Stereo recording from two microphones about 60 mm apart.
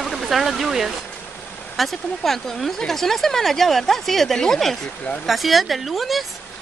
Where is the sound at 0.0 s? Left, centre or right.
Centre.